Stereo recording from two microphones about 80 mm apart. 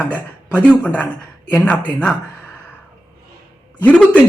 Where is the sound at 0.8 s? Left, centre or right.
Centre.